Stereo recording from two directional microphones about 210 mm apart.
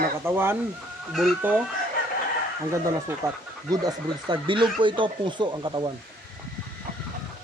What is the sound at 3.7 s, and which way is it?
Speech, 20° right (ahead or behind).